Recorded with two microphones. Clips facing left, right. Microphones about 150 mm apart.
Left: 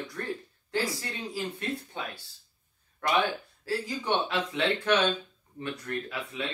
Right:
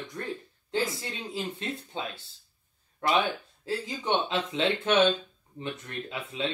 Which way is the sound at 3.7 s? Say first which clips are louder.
Even; 20° right (ahead or behind).